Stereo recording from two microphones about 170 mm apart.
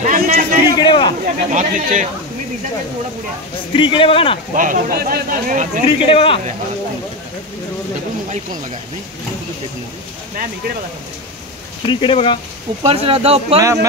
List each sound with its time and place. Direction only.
0.0 s a sound: 45° right (ahead or behind)
0.7 s a man's voice: 25° left (ahead or behind)
1.2 s speech: 45° right (ahead or behind)
3.7 s a man's voice: 30° left (ahead or behind)
4.6 s speech: 55° right (ahead or behind)
5.9 s a man's voice: 30° left (ahead or behind)
11.9 s a man's voice: 30° left (ahead or behind)
12.8 s speech: 35° right (ahead or behind)